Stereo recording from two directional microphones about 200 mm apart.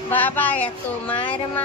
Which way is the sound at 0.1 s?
10° left (ahead or behind).